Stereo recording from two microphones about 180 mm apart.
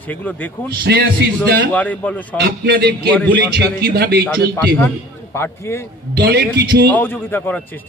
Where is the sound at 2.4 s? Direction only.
65° right (ahead or behind).